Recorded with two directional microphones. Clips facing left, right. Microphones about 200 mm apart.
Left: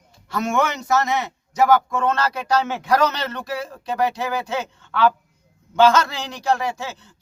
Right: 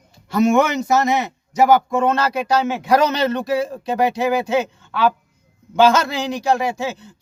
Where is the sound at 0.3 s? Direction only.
15° right (ahead or behind).